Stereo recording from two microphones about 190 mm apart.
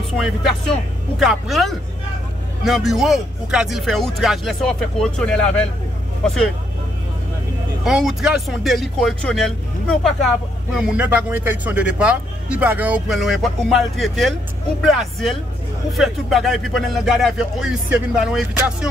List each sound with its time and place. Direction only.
1.2 s speech: centre (ahead or behind)
7.8 s speech: centre (ahead or behind)